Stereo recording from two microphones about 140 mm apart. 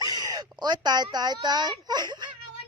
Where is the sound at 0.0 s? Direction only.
25° right (ahead or behind).